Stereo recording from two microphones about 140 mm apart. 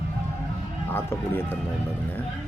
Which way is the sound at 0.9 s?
15° left (ahead or behind).